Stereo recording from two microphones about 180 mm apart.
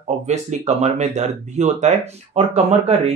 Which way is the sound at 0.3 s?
40° right (ahead or behind).